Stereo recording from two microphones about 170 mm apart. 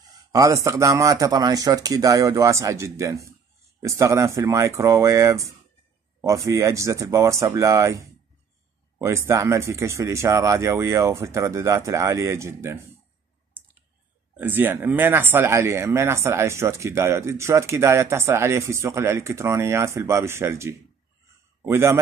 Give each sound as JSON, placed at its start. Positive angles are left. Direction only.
{"t": 0.1, "sound": "speech", "side_deg": -20}
{"t": 14.3, "sound": "speech", "side_deg": -10}